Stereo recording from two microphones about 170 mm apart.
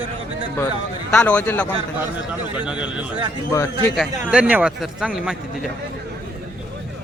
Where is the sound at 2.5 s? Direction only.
5° right (ahead or behind).